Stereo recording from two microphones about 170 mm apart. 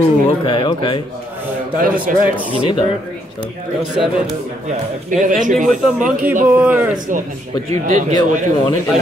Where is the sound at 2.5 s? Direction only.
30° left (ahead or behind).